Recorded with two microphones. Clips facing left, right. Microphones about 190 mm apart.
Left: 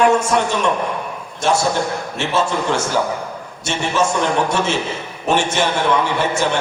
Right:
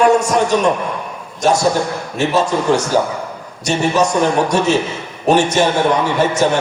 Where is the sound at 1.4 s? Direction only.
40° right (ahead or behind).